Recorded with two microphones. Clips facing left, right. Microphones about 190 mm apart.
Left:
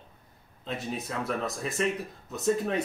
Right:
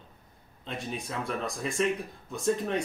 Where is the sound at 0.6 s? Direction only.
5° left (ahead or behind).